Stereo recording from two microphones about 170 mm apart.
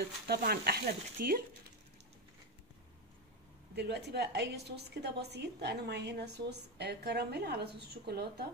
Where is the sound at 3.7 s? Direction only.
75° right (ahead or behind).